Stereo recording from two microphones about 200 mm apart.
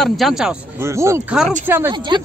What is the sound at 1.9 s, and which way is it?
Speech, 20° right (ahead or behind).